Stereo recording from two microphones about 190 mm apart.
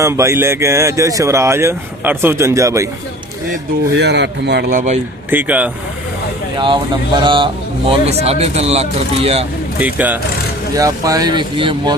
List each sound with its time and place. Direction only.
0.0 s speech: 15° right (ahead or behind)
3.9 s speech: 65° right (ahead or behind)
4.7 s speech: 40° right (ahead or behind)
5.3 s speech: 10° right (ahead or behind)
7.2 s speech: 25° right (ahead or behind)
9.8 s speech: 10° right (ahead or behind); by 11.9 s 25° right (ahead or behind)